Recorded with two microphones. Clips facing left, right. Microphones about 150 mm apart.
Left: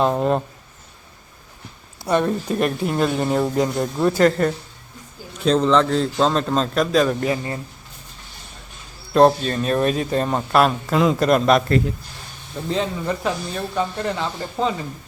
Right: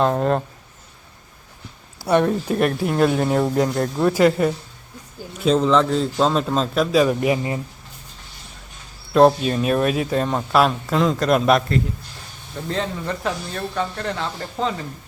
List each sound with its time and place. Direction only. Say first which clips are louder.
0.0 s a man's voice: even; 5° left (ahead or behind)
2.0 s a man's voice: right 2 dB; 10° right (ahead or behind)
9.1 s a man's voice: even; centre (ahead or behind)
12.6 s speech: left 2 dB; 5° left (ahead or behind)